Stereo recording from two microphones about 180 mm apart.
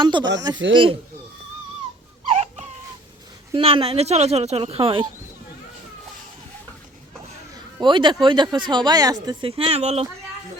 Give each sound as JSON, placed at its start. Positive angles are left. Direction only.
{"t": 0.0, "sound": "speech", "side_deg": -25}
{"t": 2.3, "sound": "a sound", "side_deg": -35}
{"t": 3.5, "sound": "speech", "side_deg": -30}
{"t": 7.8, "sound": "speech", "side_deg": -25}